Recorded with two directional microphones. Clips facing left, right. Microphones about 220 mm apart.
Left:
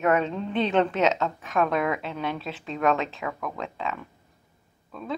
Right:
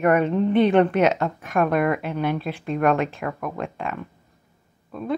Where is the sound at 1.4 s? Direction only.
Centre (ahead or behind).